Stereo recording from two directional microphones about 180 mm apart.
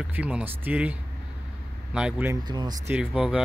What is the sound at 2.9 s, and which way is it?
Speech, 5° right (ahead or behind).